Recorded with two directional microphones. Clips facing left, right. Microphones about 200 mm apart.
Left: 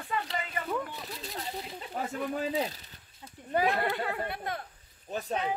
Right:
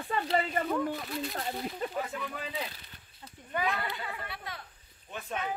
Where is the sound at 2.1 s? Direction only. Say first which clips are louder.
Left 7 dB; 40° left (ahead or behind).